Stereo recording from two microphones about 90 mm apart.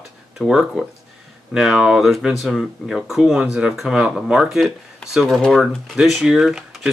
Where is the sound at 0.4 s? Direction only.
5° right (ahead or behind).